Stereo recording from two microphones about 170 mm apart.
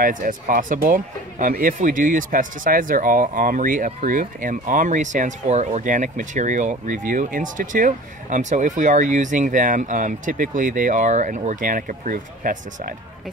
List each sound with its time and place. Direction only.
0.0 s speech: 50° right (ahead or behind)